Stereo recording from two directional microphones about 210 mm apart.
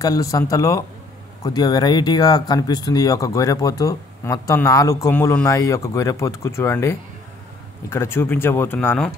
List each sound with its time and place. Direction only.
0.0 s speech: 15° left (ahead or behind)